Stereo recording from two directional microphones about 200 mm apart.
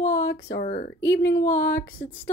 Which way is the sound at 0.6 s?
40° left (ahead or behind).